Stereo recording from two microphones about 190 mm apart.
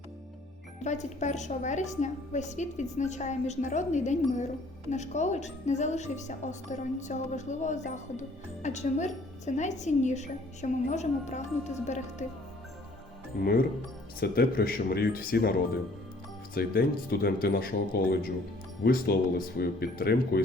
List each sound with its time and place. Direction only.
0.9 s a woman's voice: 40° left (ahead or behind)
14.2 s speech: 50° left (ahead or behind)
16.6 s speech: 55° left (ahead or behind)